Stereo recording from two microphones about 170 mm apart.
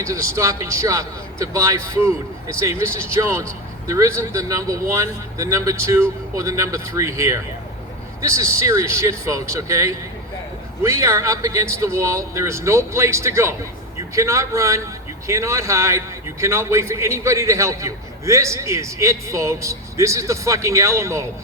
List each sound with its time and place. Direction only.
0.0 s a man's voice: 15° right (ahead or behind)